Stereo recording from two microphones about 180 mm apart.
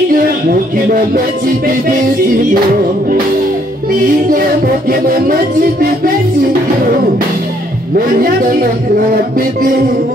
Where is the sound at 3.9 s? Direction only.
50° right (ahead or behind).